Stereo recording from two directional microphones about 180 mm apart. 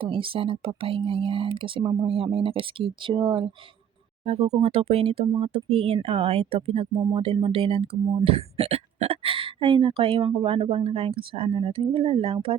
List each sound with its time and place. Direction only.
0.0 s speech: 30° right (ahead or behind)
4.6 s speech: 35° right (ahead or behind)